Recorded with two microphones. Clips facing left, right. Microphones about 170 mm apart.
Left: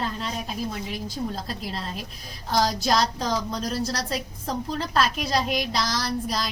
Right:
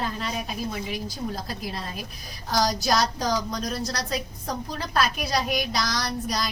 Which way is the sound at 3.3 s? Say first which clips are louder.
Even; 25° left (ahead or behind).